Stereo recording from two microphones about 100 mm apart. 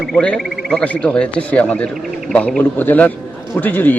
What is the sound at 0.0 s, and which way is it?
Speech, 5° left (ahead or behind).